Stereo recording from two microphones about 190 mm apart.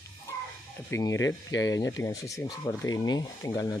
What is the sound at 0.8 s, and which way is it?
Speech, 15° left (ahead or behind).